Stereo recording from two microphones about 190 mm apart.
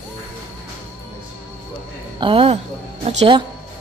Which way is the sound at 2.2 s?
30° right (ahead or behind).